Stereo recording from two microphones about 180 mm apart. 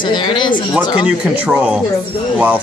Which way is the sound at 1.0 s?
10° right (ahead or behind).